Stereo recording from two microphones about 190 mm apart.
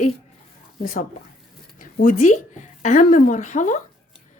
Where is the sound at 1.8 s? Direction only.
45° left (ahead or behind).